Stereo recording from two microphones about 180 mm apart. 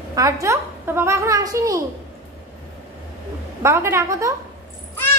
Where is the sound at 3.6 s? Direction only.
15° right (ahead or behind).